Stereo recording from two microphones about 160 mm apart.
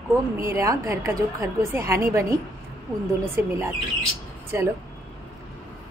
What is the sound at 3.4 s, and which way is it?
Speech, 10° right (ahead or behind).